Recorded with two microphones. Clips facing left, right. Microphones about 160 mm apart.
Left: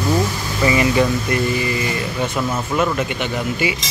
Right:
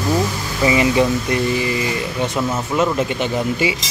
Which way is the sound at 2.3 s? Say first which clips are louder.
Right 1 dB; 20° right (ahead or behind).